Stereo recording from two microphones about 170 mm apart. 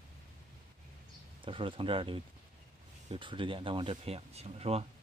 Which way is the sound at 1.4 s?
30° right (ahead or behind).